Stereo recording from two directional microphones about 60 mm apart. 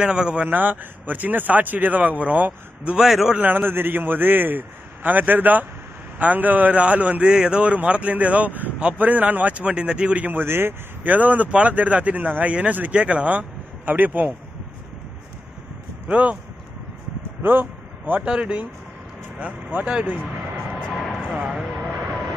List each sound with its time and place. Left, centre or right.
0.0 s speech: centre
0.5 s speech: right
3.0 s speech: centre
3.3 s a man's voice: right
10.4 s a man's voice: right
11.1 s speech: right
16.1 s speech: right
17.4 s a sound: right
18.2 s speech: centre
20.3 s vehicle: centre
20.8 s a sound: centre
21.2 s a sound: centre
21.5 s vehicle: centre